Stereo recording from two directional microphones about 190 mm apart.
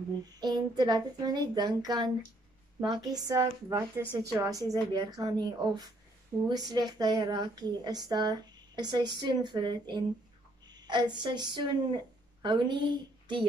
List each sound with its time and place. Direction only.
0.2 s a woman's voice: 20° right (ahead or behind)